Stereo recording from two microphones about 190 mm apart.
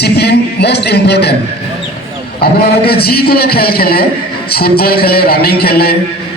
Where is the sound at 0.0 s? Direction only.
60° left (ahead or behind).